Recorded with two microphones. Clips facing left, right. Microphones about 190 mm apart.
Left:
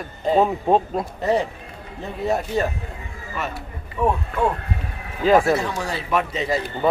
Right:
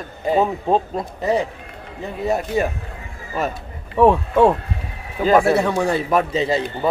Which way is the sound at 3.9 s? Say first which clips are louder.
Right 8 dB; 85° right.